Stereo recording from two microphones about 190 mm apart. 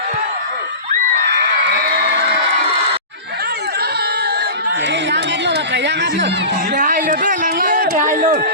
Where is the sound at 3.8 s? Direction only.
55° right (ahead or behind).